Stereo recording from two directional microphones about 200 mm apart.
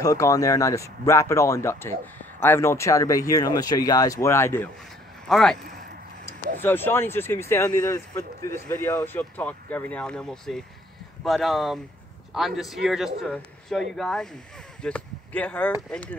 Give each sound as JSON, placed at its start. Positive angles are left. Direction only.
{"t": 0.0, "sound": "speech", "side_deg": 15}
{"t": 5.3, "sound": "speech", "side_deg": 0}
{"t": 6.6, "sound": "speech", "side_deg": 10}